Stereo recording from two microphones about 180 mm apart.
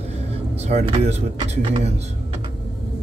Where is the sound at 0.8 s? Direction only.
35° right (ahead or behind).